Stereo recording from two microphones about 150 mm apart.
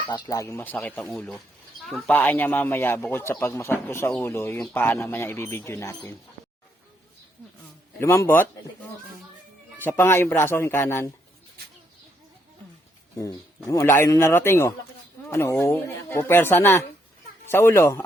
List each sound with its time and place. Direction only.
0.1 s speech: 25° left (ahead or behind)
7.9 s speech: 15° left (ahead or behind)
9.7 s speech: 15° left (ahead or behind)
13.7 s speech: 20° left (ahead or behind)